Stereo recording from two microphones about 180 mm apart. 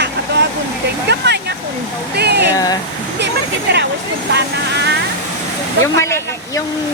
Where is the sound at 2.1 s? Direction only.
65° right (ahead or behind).